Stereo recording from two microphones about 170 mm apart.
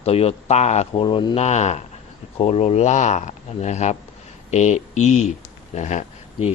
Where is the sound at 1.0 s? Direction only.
25° left (ahead or behind).